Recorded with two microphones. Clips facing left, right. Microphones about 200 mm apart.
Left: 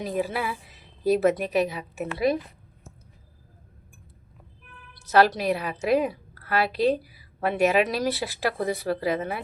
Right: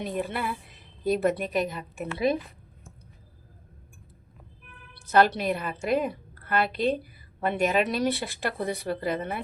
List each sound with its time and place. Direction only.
0.0 s a woman's voice: centre (ahead or behind)
5.0 s a woman's voice: 5° left (ahead or behind)